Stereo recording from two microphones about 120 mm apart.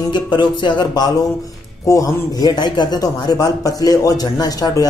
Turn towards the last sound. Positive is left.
turn(degrees=30)  # may be behind; listen again after turning